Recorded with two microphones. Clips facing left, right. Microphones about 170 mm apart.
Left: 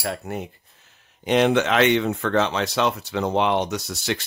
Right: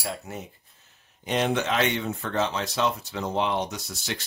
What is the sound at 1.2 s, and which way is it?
Speech, 85° left.